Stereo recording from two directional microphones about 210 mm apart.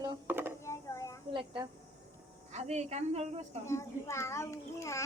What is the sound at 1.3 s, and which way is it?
A woman's voice, 25° right (ahead or behind).